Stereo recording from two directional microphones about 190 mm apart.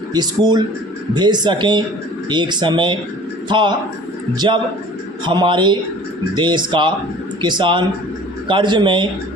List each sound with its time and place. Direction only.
0.1 s speech: 20° right (ahead or behind)